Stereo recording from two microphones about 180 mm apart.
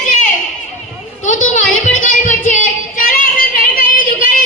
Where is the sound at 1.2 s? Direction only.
45° left (ahead or behind).